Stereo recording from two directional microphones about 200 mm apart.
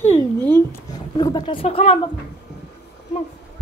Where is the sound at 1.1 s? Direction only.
20° left (ahead or behind).